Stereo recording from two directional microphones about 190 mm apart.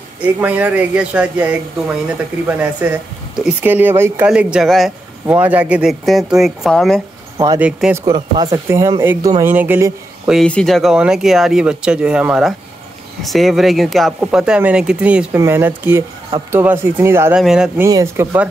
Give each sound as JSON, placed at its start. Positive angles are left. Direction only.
{"t": 0.2, "sound": "speech", "side_deg": -10}
{"t": 7.3, "sound": "speech", "side_deg": -20}
{"t": 7.6, "sound": "speech", "side_deg": -5}
{"t": 8.0, "sound": "speech", "side_deg": -20}
{"t": 10.2, "sound": "speech", "side_deg": 0}
{"t": 17.8, "sound": "speech", "side_deg": -15}